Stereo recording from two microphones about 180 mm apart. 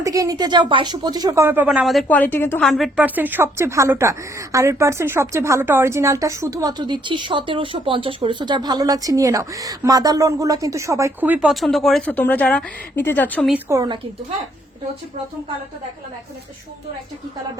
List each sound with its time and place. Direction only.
0.0 s speech: 20° right (ahead or behind); by 2.6 s 10° left (ahead or behind)
2.6 s speech: centre (ahead or behind)
13.5 s speech: 15° right (ahead or behind)